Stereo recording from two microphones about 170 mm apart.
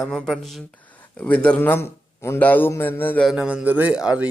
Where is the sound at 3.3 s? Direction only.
5° right (ahead or behind).